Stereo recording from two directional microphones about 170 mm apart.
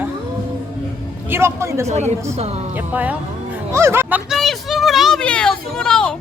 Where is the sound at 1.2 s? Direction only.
15° right (ahead or behind).